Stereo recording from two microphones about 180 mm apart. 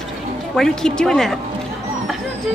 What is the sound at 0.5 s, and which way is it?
Speech, 5° left (ahead or behind).